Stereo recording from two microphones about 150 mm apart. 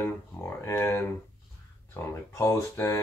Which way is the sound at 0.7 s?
15° left (ahead or behind).